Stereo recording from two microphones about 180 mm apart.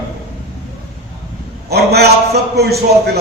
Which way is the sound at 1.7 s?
65° right (ahead or behind).